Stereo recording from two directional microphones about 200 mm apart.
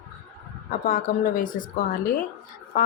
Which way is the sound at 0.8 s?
45° left (ahead or behind).